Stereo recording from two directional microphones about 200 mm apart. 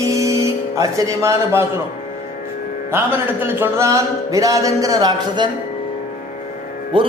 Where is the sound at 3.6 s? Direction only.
15° right (ahead or behind).